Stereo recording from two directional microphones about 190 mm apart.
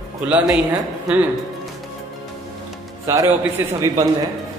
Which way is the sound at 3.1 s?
15° right (ahead or behind).